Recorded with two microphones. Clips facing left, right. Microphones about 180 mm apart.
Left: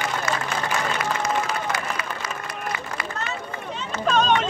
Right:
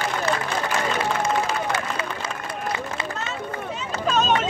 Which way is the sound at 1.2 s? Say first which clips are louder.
Right 2 dB; 30° right (ahead or behind).